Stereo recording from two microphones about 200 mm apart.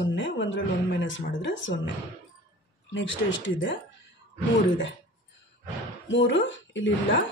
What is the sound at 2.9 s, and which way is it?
Speech, 70° left (ahead or behind).